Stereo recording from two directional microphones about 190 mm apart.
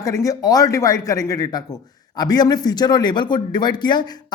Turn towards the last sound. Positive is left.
turn(degrees=25)  # may be behind; listen again after turning